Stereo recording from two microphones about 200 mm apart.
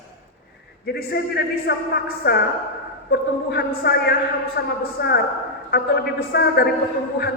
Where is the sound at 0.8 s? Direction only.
50° left (ahead or behind).